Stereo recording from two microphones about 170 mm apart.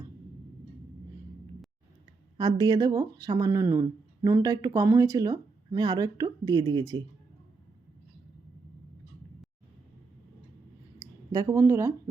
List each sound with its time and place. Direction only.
2.6 s speech: 20° right (ahead or behind)
11.0 s a woman's voice: 20° right (ahead or behind)